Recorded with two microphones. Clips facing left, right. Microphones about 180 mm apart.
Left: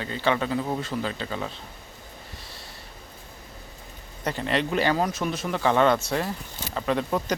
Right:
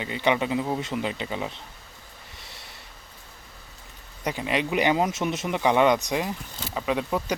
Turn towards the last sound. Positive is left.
turn(degrees=-10)  # may be behind; listen again after turning